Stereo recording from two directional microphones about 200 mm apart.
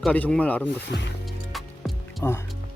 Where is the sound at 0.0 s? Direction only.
5° left (ahead or behind).